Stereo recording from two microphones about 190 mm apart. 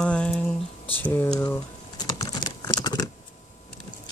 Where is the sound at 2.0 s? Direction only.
20° left (ahead or behind).